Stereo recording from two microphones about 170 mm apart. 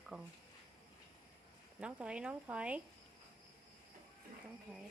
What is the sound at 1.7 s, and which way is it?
Speech, 5° right (ahead or behind).